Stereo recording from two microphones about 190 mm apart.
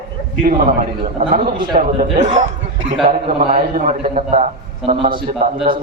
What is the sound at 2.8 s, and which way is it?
Speech, 30° right (ahead or behind).